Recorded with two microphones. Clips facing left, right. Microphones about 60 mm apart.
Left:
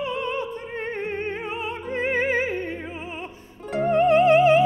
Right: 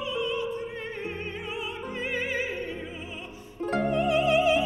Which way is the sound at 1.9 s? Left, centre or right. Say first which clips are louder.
Left 9 dB; left.